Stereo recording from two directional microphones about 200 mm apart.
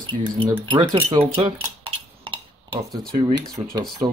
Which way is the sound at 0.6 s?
25° right (ahead or behind).